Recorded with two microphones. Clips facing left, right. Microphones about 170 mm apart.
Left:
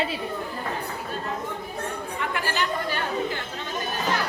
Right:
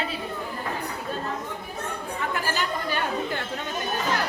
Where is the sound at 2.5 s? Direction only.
45° right (ahead or behind).